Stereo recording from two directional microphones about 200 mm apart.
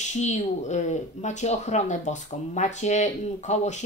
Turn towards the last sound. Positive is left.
turn(degrees=35)  # may be behind; listen again after turning